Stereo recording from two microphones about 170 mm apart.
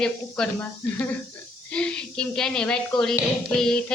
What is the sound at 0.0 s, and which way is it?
Speech, 5° left (ahead or behind).